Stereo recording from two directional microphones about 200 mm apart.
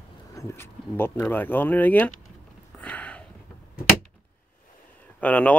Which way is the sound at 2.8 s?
5° left (ahead or behind).